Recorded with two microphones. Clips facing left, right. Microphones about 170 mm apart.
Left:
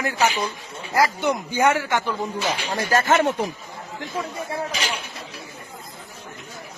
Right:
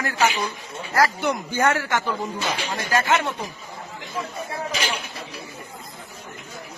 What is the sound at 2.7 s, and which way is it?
Speech, 40° left (ahead or behind).